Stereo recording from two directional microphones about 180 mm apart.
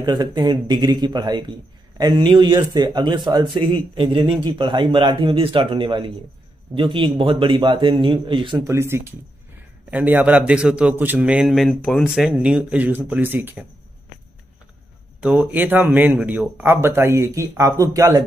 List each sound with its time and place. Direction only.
0.0 s a man's voice: 25° right (ahead or behind)
15.1 s a man's voice: 5° right (ahead or behind)